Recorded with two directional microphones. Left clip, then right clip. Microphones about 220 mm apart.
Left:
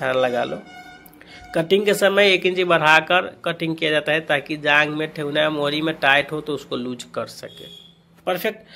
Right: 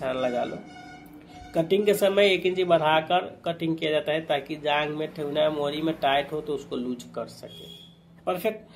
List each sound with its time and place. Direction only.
0.0 s speech: 25° left (ahead or behind)
1.5 s speech: 25° left (ahead or behind)
8.3 s speech: 20° left (ahead or behind)